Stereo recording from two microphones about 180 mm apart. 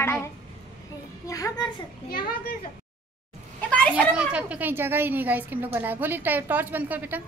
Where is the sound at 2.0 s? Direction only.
55° left (ahead or behind).